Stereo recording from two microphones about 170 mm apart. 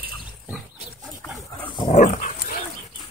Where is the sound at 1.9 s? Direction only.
45° left (ahead or behind).